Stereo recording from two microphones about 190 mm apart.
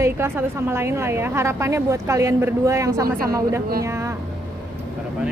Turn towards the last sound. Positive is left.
turn(degrees=-15)  # may be behind; listen again after turning